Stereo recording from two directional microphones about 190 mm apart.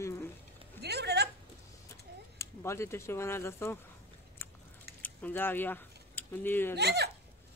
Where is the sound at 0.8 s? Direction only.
60° right (ahead or behind).